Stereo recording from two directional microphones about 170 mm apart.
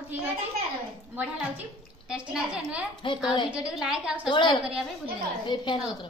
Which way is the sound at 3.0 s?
30° left (ahead or behind).